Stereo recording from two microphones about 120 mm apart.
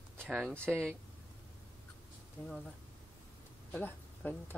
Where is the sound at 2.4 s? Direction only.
15° left (ahead or behind).